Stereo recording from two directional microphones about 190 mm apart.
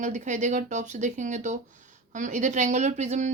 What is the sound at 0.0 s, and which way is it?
Speech, 40° right (ahead or behind).